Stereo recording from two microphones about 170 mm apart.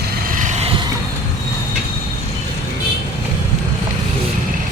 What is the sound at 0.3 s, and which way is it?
Vehicle, 50° right (ahead or behind).